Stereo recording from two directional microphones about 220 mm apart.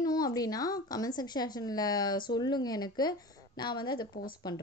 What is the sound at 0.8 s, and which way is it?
A woman's voice, 15° left (ahead or behind).